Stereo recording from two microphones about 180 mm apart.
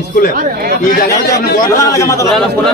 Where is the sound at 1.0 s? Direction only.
55° left (ahead or behind).